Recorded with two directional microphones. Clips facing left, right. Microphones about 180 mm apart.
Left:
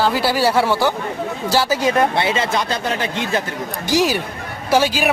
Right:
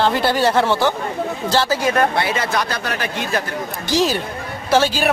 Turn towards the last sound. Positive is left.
turn(degrees=10)  # may be behind; listen again after turning